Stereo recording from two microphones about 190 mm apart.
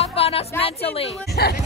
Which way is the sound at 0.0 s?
30° left (ahead or behind).